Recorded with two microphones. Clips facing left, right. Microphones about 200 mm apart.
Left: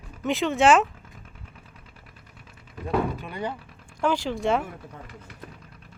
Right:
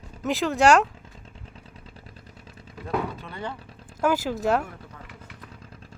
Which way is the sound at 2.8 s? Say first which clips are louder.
Left 3 dB; 15° left (ahead or behind).